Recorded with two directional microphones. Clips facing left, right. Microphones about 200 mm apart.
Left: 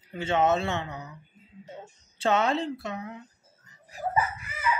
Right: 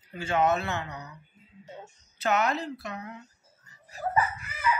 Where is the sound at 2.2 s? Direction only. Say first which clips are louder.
Left 2 dB; 30° left (ahead or behind).